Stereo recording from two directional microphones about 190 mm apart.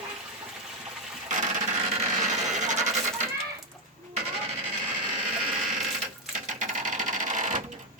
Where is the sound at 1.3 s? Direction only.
40° right (ahead or behind).